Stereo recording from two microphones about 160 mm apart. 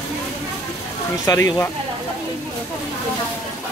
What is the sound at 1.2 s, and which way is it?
Speech, 20° left (ahead or behind).